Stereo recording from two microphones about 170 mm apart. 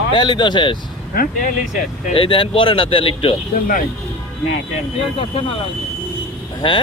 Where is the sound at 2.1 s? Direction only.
30° left (ahead or behind).